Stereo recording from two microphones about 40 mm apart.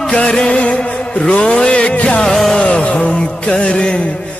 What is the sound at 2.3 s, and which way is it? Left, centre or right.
Music, centre.